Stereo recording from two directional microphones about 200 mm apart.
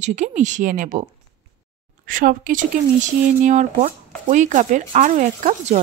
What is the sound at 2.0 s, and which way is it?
Speech, 45° right (ahead or behind).